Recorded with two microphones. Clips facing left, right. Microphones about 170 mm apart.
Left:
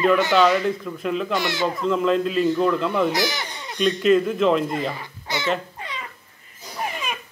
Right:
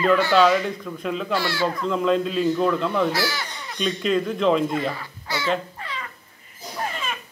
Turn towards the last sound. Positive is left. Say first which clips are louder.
# left 1 dB
turn(degrees=15)  # may be behind; listen again after turning